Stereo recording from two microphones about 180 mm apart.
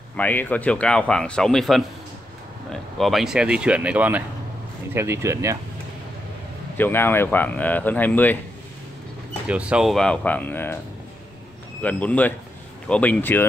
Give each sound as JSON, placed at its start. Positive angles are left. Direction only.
{"t": 0.2, "sound": "speech", "side_deg": 10}
{"t": 6.8, "sound": "speech", "side_deg": 10}
{"t": 9.5, "sound": "speech", "side_deg": -5}
{"t": 11.8, "sound": "speech", "side_deg": 10}